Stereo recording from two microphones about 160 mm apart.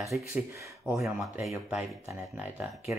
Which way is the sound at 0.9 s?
5° right (ahead or behind).